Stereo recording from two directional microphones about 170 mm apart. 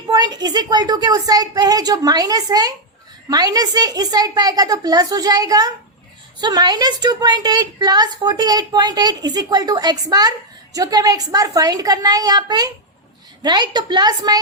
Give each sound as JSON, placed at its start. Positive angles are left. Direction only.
{"t": 0.1, "sound": "a woman's voice", "side_deg": -25}